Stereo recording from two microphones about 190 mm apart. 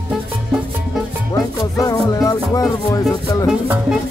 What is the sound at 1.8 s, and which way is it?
Music, 20° left (ahead or behind).